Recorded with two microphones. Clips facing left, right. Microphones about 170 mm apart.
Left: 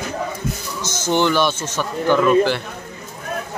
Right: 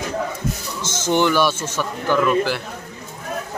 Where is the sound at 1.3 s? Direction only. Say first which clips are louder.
Even; 10° right (ahead or behind).